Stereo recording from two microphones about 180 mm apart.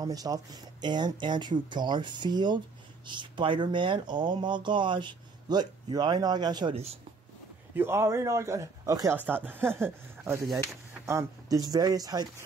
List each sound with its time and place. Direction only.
0.0 s speech: 20° right (ahead or behind)
7.7 s speech: 15° right (ahead or behind)